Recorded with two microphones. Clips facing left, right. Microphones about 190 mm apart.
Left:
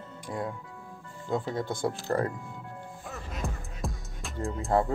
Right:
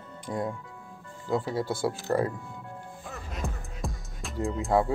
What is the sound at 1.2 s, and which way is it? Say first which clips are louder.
Speech: right 2 dB; 5° right (ahead or behind).